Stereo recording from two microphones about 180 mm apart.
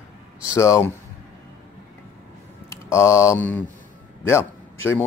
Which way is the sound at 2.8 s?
15° left (ahead or behind).